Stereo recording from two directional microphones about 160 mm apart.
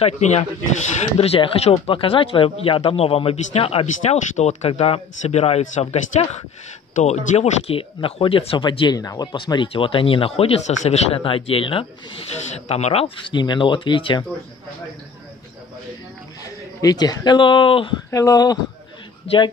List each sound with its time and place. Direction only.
0.0 s speech: 45° left (ahead or behind)
7.0 s speech: 45° left (ahead or behind); by 14.2 s 30° left (ahead or behind)
16.8 s speech: 25° left (ahead or behind)
18.1 s speech: 20° left (ahead or behind)